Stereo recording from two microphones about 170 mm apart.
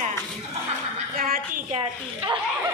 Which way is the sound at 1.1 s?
55° right (ahead or behind).